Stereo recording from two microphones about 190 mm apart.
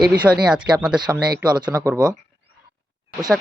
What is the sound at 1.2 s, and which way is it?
Speech, 20° right (ahead or behind).